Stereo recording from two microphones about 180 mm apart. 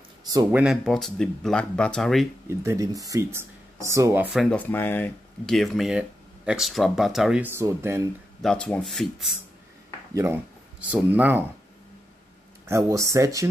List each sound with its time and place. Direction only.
0.5 s speech: 5° right (ahead or behind)
2.4 s speech: 15° right (ahead or behind)
4.3 s speech: centre (ahead or behind); by 8.1 s 15° right (ahead or behind)
8.4 s speech: centre (ahead or behind)
10.1 s speech: 15° right (ahead or behind)
12.6 s speech: 15° right (ahead or behind)